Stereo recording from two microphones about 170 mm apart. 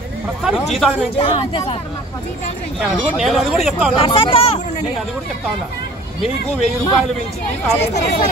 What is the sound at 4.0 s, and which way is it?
Speech, 30° left (ahead or behind).